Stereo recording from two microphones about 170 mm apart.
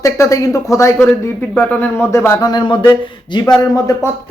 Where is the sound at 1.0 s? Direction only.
5° left (ahead or behind).